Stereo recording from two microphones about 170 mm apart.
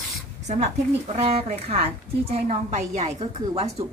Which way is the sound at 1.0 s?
35° right (ahead or behind).